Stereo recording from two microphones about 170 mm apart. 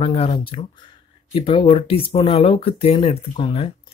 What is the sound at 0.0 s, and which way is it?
Speech, 35° left (ahead or behind).